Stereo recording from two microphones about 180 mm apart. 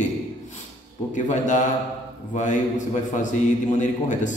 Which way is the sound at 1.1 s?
45° left (ahead or behind).